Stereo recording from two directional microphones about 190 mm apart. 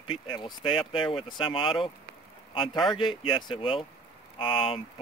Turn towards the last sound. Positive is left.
turn(degrees=30)  # may be behind; listen again after turning